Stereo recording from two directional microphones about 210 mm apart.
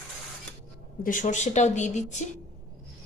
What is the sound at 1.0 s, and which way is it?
A woman's voice, 40° left (ahead or behind).